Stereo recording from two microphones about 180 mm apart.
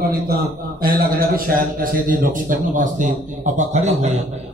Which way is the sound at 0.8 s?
50° right (ahead or behind).